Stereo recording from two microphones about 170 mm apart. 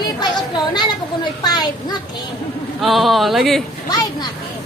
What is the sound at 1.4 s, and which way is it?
Speech, 25° left (ahead or behind).